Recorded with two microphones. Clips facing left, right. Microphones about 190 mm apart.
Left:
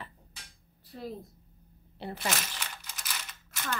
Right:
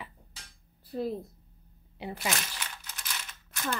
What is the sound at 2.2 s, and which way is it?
Speech, centre (ahead or behind).